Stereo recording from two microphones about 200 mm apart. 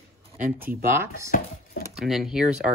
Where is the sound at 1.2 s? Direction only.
45° left (ahead or behind).